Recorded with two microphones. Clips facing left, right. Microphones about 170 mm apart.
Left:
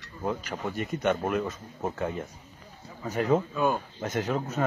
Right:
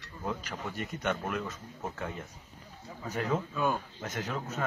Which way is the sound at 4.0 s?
30° left (ahead or behind).